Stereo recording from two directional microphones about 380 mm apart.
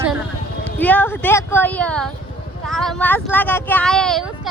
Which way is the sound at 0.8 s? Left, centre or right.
Centre.